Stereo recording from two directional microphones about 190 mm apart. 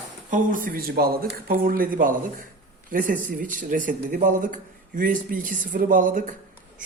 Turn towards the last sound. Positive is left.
turn(degrees=-45)  # may be behind; listen again after turning